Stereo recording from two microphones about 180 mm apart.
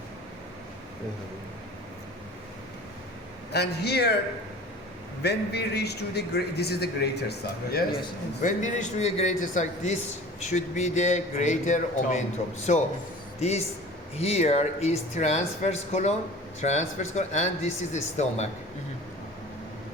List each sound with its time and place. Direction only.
3.5 s a man's voice: 65° left (ahead or behind)
5.2 s a man's voice: 65° left (ahead or behind)
8.4 s speech: 45° left (ahead or behind)
14.2 s speech: 35° left (ahead or behind)